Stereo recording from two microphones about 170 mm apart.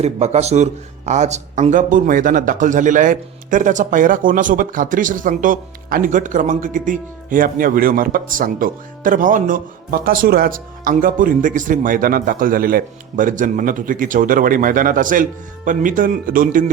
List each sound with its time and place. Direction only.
0.0 s a man's voice: 40° right (ahead or behind)